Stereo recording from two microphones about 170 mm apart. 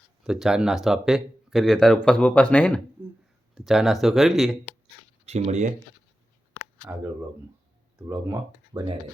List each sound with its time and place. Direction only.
0.2 s speech: centre (ahead or behind)
5.2 s speech: 40° right (ahead or behind)
7.9 s speech: 15° right (ahead or behind)